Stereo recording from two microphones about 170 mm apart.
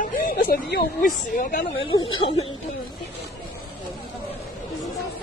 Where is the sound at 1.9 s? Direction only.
30° left (ahead or behind).